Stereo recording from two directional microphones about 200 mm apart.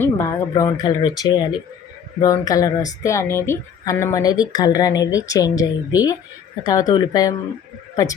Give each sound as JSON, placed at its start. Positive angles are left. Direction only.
{"t": 0.0, "sound": "speech", "side_deg": 15}